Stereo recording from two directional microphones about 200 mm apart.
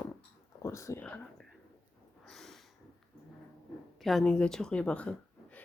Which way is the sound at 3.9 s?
Centre (ahead or behind).